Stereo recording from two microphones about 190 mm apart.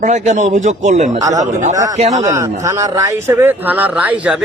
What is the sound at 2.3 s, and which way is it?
Speech, 15° right (ahead or behind).